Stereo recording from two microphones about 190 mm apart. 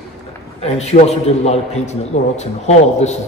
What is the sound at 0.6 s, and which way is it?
A man's voice, 35° left (ahead or behind).